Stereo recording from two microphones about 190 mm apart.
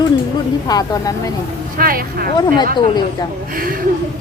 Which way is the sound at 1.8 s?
50° right (ahead or behind).